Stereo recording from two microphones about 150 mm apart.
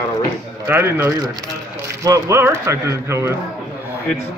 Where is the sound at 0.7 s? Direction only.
15° right (ahead or behind).